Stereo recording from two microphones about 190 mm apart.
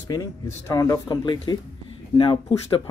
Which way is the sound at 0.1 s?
15° left (ahead or behind).